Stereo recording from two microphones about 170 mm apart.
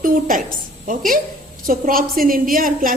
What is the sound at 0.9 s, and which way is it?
A woman's voice, 55° right (ahead or behind).